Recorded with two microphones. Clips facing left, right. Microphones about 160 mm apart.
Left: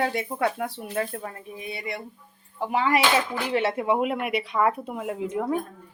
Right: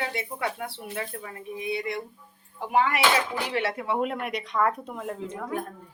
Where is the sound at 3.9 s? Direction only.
10° left (ahead or behind).